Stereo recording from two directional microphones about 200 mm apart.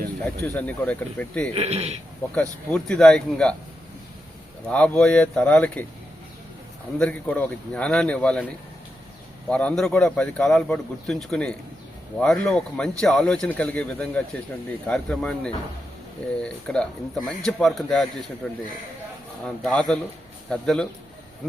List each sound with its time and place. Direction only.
0.4 s speech: 10° left (ahead or behind)
1.5 s a man's voice: 30° right (ahead or behind)
2.3 s speech: 5° left (ahead or behind)
4.7 s speech: 5° left (ahead or behind)
7.0 s speech: 5° left (ahead or behind)
9.5 s speech: 5° left (ahead or behind)
19.6 s speech: 5° left (ahead or behind)